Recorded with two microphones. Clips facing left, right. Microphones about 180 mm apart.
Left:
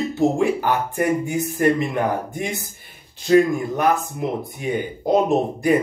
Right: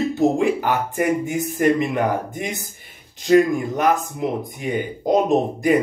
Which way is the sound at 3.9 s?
15° right (ahead or behind).